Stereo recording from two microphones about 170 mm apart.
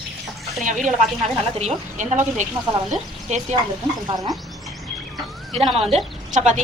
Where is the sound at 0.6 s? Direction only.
50° right (ahead or behind).